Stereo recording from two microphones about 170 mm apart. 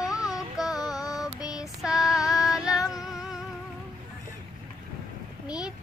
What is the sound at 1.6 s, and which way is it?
Child singing, 5° right (ahead or behind).